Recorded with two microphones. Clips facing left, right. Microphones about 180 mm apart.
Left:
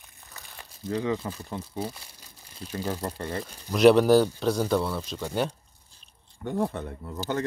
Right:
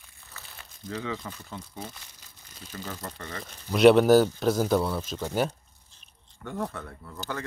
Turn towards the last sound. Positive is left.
turn(degrees=25)  # may be behind; listen again after turning